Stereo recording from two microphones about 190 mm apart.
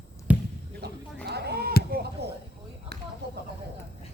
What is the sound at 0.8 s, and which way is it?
Sheep, 60° right (ahead or behind).